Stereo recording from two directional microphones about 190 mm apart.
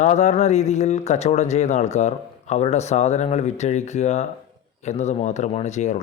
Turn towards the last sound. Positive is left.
turn(degrees=35)  # may be behind; listen again after turning